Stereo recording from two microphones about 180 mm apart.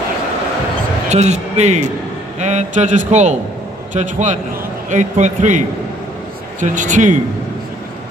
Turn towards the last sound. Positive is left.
turn(degrees=-45)  # may be behind; listen again after turning